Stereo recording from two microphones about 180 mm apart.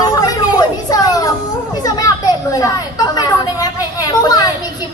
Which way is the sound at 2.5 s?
20° left (ahead or behind).